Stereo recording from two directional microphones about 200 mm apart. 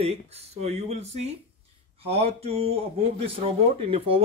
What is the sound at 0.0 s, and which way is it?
Speech, 30° right (ahead or behind).